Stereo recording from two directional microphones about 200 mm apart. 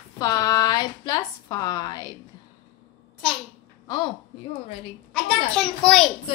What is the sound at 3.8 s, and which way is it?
Speech, 25° left (ahead or behind).